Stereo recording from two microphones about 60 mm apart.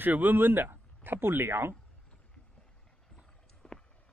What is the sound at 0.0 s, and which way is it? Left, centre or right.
Speech, right.